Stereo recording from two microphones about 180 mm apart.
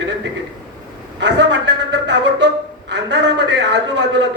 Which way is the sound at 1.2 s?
80° right.